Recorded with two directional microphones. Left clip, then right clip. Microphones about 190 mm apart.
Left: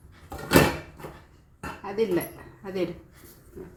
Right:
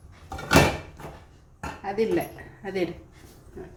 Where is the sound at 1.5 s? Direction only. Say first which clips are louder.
Right 1 dB; 5° right (ahead or behind).